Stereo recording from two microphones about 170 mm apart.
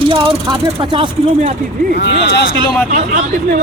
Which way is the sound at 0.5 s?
30° right (ahead or behind).